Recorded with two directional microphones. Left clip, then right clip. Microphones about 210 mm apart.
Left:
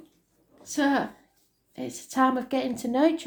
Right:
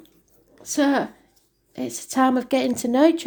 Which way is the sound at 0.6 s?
40° right (ahead or behind).